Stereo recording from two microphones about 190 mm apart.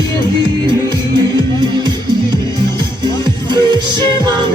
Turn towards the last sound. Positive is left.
turn(degrees=-25)  # may be behind; listen again after turning